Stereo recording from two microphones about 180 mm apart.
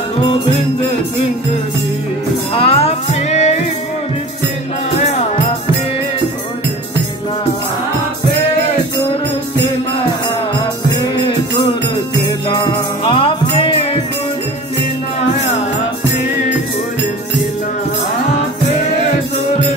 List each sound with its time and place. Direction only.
2.5 s music: 35° left (ahead or behind)
13.0 s music: 30° left (ahead or behind)